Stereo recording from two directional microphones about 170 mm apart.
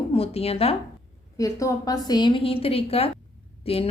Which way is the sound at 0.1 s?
35° left (ahead or behind).